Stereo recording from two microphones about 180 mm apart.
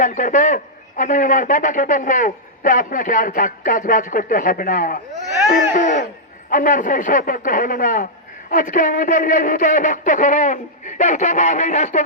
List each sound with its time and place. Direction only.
0.0 s a man's voice: 45° left (ahead or behind)
5.5 s a sound: 45° left (ahead or behind)
6.5 s a man's voice: 45° left (ahead or behind)